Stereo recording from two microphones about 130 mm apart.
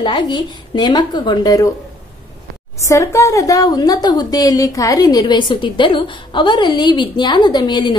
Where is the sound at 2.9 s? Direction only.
20° left (ahead or behind).